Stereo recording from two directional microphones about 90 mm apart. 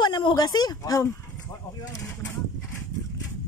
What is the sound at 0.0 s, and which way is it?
Speech, 55° left (ahead or behind).